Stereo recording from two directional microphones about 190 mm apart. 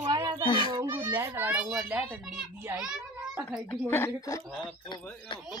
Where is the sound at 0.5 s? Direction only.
25° left (ahead or behind).